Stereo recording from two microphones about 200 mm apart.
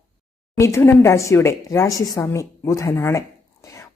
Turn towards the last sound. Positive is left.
turn(degrees=15)  # may be behind; listen again after turning